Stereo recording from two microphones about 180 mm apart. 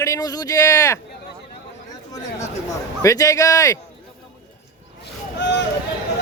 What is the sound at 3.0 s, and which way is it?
Speech, 20° left (ahead or behind).